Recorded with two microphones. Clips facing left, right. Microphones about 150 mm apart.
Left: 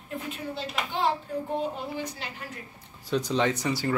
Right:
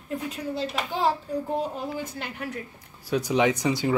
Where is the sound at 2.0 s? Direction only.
50° right (ahead or behind).